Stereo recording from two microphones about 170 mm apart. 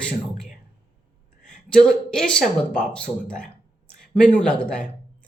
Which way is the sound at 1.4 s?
50° left (ahead or behind).